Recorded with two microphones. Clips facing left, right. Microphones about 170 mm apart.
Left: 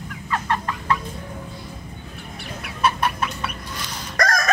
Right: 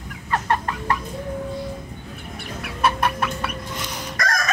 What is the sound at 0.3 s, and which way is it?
Chicken, 45° right (ahead or behind).